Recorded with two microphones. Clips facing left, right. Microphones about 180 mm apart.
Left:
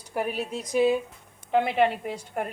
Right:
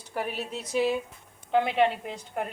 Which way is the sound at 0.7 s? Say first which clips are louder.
Left 4 dB; 15° left (ahead or behind).